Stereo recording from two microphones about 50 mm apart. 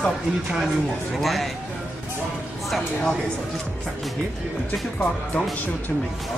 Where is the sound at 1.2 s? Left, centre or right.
Centre.